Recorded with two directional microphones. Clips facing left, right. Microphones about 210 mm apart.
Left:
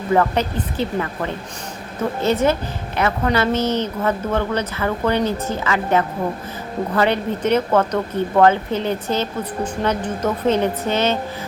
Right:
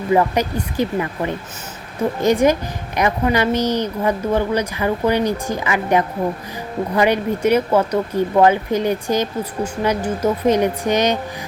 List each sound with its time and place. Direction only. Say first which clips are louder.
0.1 s speech: right 1 dB; 10° right (ahead or behind)